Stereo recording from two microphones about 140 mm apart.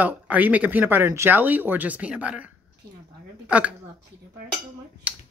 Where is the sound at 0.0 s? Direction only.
10° right (ahead or behind).